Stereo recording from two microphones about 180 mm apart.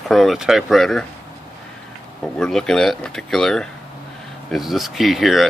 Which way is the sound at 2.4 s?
5° left (ahead or behind).